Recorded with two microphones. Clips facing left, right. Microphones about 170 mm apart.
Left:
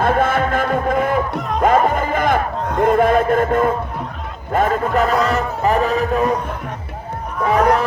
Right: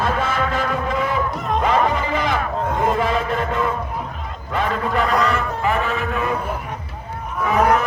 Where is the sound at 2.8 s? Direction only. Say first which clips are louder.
Left 8 dB; 50° left (ahead or behind).